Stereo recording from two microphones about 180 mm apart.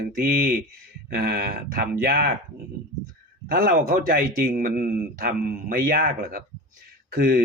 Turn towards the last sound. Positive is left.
turn(degrees=-55)  # may be behind; listen again after turning